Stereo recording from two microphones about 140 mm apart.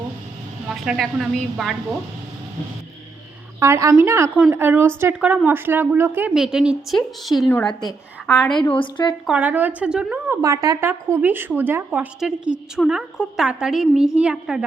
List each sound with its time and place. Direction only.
0.7 s a woman's voice: centre (ahead or behind)
3.6 s a woman's voice: 20° right (ahead or behind)
6.3 s a woman's voice: 5° right (ahead or behind)
8.7 s a woman's voice: 35° left (ahead or behind)
9.2 s speech: 10° right (ahead or behind)
10.2 s a woman's voice: 25° right (ahead or behind); by 14.6 s 5° right (ahead or behind)